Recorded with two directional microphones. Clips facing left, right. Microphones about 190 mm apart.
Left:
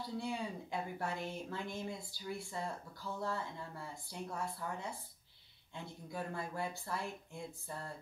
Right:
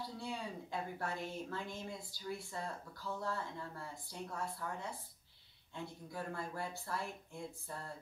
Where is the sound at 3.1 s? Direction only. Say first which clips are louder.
Even; 15° left (ahead or behind).